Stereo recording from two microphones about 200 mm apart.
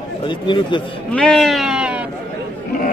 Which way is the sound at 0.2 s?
25° left (ahead or behind).